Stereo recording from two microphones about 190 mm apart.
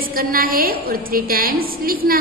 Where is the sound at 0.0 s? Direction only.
50° right (ahead or behind).